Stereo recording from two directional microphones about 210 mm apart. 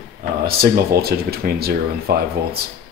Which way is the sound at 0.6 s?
45° right (ahead or behind).